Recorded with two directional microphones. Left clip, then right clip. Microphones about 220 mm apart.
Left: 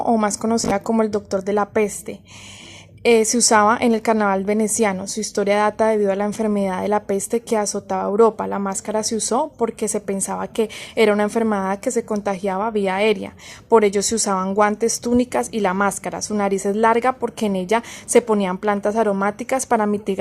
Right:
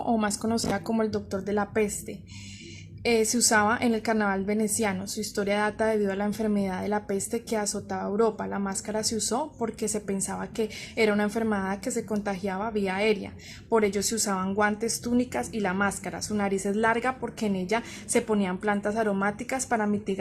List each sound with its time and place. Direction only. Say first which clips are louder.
0.0 s a woman's voice: left 8 dB; 30° left (ahead or behind)